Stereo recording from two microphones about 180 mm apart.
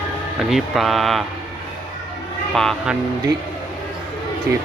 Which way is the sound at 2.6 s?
Centre (ahead or behind).